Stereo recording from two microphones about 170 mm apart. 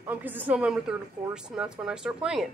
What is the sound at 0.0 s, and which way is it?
A woman's voice, 10° right (ahead or behind).